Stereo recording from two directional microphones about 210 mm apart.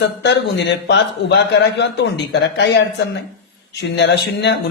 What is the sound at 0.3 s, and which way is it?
A man's voice, 55° left (ahead or behind).